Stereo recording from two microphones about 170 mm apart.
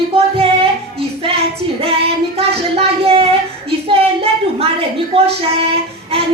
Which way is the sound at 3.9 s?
35° right (ahead or behind).